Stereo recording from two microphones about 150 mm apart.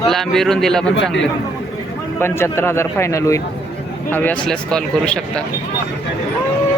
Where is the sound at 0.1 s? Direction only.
Centre (ahead or behind).